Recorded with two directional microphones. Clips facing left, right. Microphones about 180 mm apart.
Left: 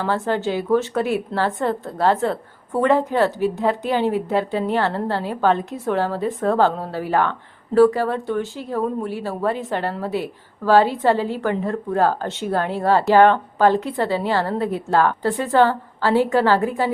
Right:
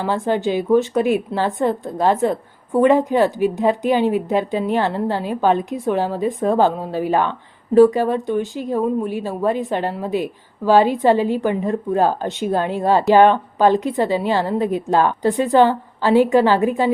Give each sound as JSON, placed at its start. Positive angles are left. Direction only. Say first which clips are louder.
{"t": 0.0, "sound": "a woman's voice", "louder": "right 2 dB", "side_deg": -15}